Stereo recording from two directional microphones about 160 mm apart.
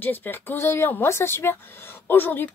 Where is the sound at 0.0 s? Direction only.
10° left (ahead or behind).